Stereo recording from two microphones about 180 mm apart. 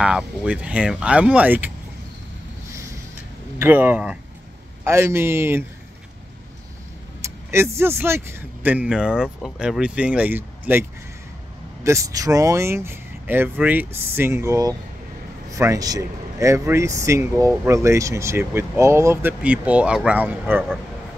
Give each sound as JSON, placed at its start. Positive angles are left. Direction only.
{"t": 0.0, "sound": "speech", "side_deg": -5}
{"t": 3.5, "sound": "speech", "side_deg": -10}
{"t": 7.2, "sound": "speech", "side_deg": -15}